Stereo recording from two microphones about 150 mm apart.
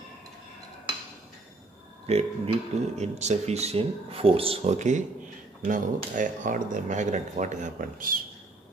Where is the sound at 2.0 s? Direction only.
45° right (ahead or behind); by 8.2 s 65° right (ahead or behind).